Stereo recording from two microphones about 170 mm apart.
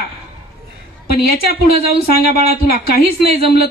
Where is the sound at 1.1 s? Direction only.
65° left (ahead or behind).